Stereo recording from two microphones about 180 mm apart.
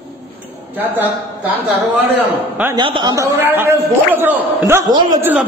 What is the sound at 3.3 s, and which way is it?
A man's voice, 10° right (ahead or behind).